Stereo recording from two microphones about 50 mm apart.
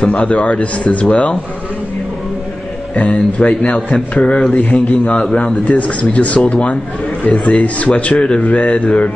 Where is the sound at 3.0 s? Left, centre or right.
Left.